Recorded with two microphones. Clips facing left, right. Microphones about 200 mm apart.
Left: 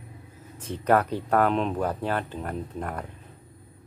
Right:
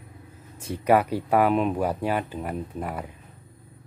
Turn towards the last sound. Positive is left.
turn(degrees=-5)  # may be behind; listen again after turning